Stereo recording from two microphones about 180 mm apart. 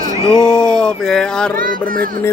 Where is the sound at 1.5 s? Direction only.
50° right (ahead or behind).